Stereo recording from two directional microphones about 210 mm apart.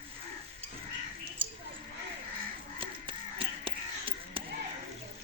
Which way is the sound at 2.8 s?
25° right (ahead or behind).